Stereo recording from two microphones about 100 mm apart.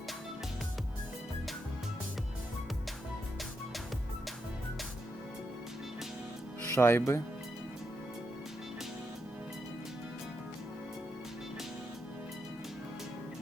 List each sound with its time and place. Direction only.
6.7 s speech: 25° left (ahead or behind)